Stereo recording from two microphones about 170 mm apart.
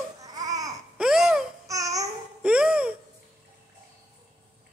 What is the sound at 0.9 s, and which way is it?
Laughter, 5° right (ahead or behind).